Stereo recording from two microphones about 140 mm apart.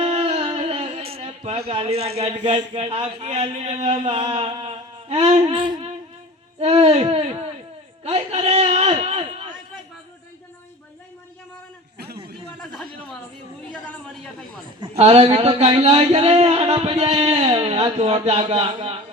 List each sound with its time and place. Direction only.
0.0 s music: 45° right (ahead or behind)
1.5 s a man's voice: 45° right (ahead or behind)
6.6 s a sound: 45° right (ahead or behind)
14.9 s a man's voice: 50° right (ahead or behind)